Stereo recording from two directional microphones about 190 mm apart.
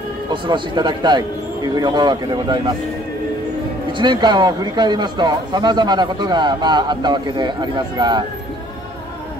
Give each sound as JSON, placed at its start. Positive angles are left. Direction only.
{"t": 0.3, "sound": "a man's voice", "side_deg": -25}
{"t": 4.0, "sound": "a man's voice", "side_deg": -25}